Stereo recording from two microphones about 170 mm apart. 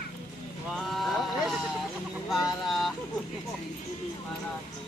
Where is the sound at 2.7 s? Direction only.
Centre (ahead or behind).